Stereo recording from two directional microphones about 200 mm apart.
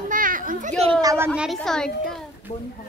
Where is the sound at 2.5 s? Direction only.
35° left (ahead or behind).